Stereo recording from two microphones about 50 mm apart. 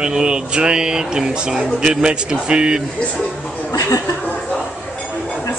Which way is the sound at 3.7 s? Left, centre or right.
Left.